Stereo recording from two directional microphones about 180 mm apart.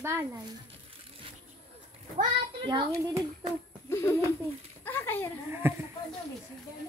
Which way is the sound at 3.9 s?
15° left (ahead or behind).